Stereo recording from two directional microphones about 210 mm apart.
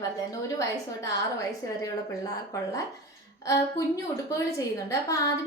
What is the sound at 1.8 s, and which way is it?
A woman's voice, 15° left (ahead or behind).